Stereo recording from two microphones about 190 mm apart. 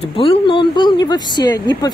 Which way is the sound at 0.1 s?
30° left (ahead or behind).